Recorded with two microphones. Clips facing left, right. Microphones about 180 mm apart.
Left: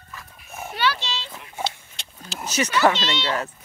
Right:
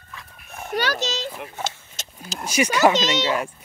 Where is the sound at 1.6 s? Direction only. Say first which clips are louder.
Left 1 dB; 45° right (ahead or behind).